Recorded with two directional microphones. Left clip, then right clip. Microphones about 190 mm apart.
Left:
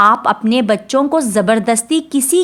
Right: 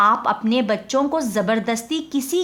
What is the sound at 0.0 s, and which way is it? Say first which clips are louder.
A woman's voice: left 6 dB; 35° left (ahead or behind).